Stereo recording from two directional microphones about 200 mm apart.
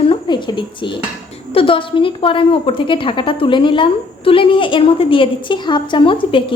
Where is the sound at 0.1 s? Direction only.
25° left (ahead or behind).